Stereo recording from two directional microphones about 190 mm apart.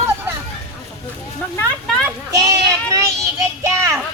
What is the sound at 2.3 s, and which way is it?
Child singing, 15° right (ahead or behind).